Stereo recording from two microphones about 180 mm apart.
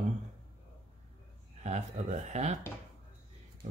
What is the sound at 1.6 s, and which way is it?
Speech, 40° right (ahead or behind).